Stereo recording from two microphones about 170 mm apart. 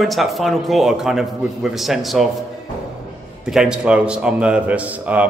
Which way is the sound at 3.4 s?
5° right (ahead or behind).